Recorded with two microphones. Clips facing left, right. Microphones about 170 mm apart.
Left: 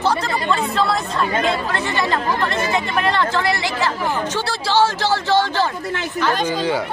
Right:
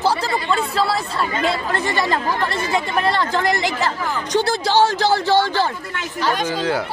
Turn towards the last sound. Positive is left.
turn(degrees=0)  # may be behind; listen again after turning